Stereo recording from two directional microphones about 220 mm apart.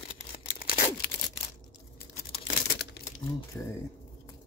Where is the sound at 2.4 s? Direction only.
35° left (ahead or behind).